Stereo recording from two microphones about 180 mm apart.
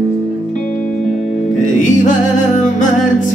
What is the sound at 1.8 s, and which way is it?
Music, 45° left (ahead or behind).